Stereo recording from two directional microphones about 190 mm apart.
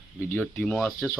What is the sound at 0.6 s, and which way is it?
Speech, 5° left (ahead or behind).